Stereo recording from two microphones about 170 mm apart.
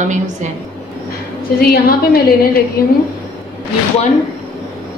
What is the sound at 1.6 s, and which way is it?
A woman's voice, 60° left (ahead or behind).